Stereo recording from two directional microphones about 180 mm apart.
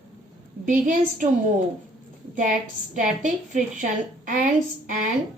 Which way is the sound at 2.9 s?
45° right (ahead or behind).